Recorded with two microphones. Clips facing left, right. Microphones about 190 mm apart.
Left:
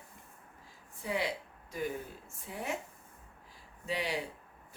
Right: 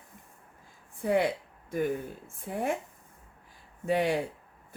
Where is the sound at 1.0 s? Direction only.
55° right (ahead or behind).